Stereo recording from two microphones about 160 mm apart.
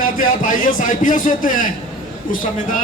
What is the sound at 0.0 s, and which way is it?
A man's voice, 60° left (ahead or behind).